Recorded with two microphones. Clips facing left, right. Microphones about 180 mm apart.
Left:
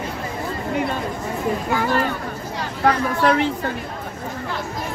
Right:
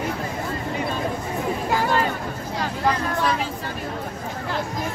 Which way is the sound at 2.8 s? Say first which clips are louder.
Left 5 dB; 70° left (ahead or behind).